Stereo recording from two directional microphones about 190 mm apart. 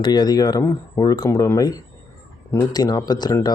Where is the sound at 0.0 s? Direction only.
20° left (ahead or behind).